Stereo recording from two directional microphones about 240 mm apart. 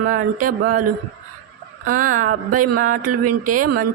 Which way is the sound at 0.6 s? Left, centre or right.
Right.